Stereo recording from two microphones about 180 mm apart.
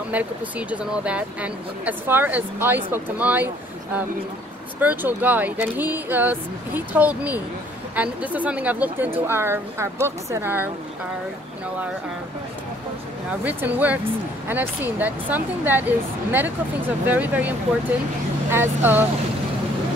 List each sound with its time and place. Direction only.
0.1 s speech: 10° right (ahead or behind)
4.7 s speech: 10° right (ahead or behind)
13.4 s speech: 10° right (ahead or behind)